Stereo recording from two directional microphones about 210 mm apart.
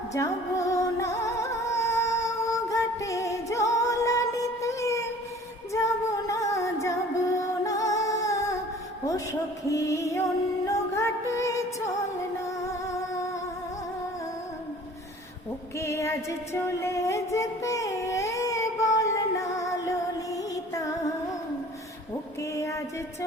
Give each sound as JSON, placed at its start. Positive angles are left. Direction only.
{"t": 0.1, "sound": "music", "side_deg": 15}
{"t": 9.6, "sound": "music", "side_deg": 15}
{"t": 15.8, "sound": "music", "side_deg": 15}
{"t": 22.4, "sound": "music", "side_deg": 15}